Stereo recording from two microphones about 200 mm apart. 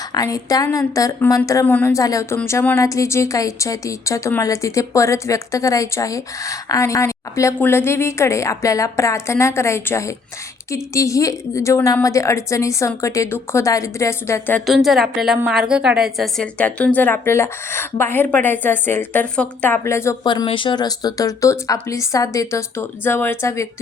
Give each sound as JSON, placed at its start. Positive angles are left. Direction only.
{"t": 0.1, "sound": "speech", "side_deg": 20}
{"t": 14.7, "sound": "speech", "side_deg": 0}